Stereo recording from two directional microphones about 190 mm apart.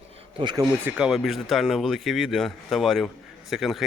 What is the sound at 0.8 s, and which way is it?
Speech, 5° right (ahead or behind).